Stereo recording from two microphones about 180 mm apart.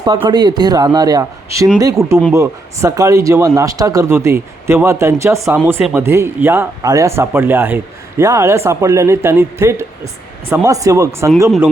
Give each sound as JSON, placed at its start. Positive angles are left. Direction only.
{"t": 0.3, "sound": "a man's voice", "side_deg": -25}